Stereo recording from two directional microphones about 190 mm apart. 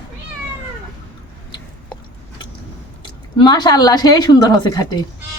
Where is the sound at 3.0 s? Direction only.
25° left (ahead or behind).